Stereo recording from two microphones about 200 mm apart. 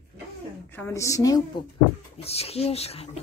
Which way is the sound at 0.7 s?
10° left (ahead or behind).